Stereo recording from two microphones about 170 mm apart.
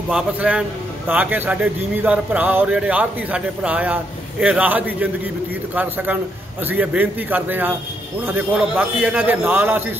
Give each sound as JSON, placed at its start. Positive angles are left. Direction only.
{"t": 0.1, "sound": "a man's voice", "side_deg": -5}